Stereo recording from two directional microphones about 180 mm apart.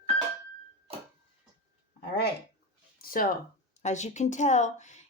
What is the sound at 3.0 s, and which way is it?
Speech, 55° left (ahead or behind).